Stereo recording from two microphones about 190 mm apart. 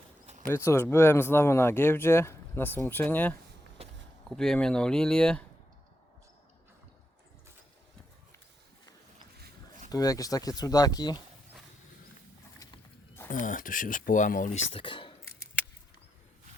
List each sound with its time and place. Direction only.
0.5 s speech: 15° left (ahead or behind)
9.9 s speech: 20° left (ahead or behind)
12.5 s livestock: 15° left (ahead or behind)
13.4 s speech: 45° left (ahead or behind)
14.7 s speech: 25° left (ahead or behind)